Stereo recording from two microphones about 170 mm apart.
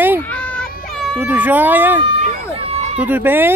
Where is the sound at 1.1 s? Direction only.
10° right (ahead or behind).